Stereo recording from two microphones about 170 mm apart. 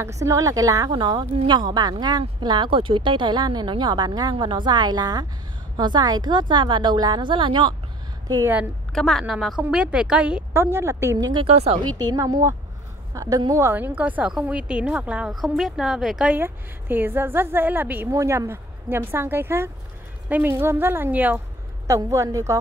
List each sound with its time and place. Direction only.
0.0 s speech: 20° right (ahead or behind)
8.5 s a woman's voice: centre (ahead or behind); by 11.4 s 20° right (ahead or behind)
11.4 s speech: 35° right (ahead or behind)
12.0 s a woman's voice: 20° right (ahead or behind)